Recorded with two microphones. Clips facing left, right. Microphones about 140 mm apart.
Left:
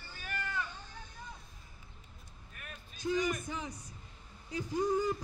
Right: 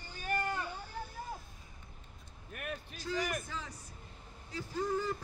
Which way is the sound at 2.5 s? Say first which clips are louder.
Right 10 dB; 65° right (ahead or behind).